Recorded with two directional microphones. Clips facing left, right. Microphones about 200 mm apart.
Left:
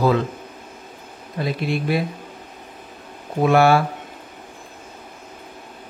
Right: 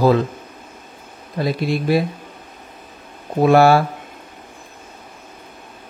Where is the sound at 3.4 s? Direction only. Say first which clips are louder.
Right 3 dB; 35° right (ahead or behind).